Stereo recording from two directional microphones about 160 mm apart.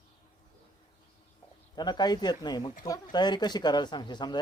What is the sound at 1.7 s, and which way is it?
Speech, 25° left (ahead or behind).